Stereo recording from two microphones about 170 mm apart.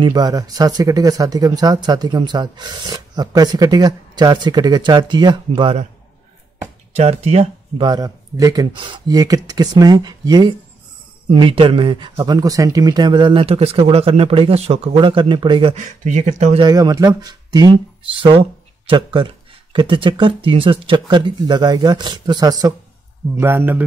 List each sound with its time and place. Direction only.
0.0 s speech: 25° right (ahead or behind)
7.0 s speech: 40° right (ahead or behind)
15.7 s speech: 45° right (ahead or behind)
16.5 s a man's voice: 25° right (ahead or behind)